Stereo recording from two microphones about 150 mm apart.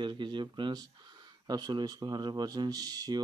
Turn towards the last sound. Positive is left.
turn(degrees=-25)  # may be behind; listen again after turning